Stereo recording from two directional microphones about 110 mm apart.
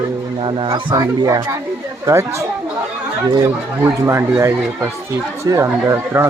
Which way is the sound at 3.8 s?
25° right (ahead or behind).